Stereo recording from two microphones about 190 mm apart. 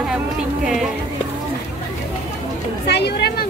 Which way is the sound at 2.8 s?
60° left (ahead or behind).